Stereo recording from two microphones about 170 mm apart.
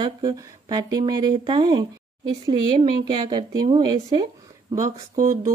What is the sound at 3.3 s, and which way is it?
Speech, 25° right (ahead or behind).